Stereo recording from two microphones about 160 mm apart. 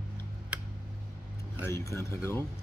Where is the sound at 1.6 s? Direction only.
15° left (ahead or behind).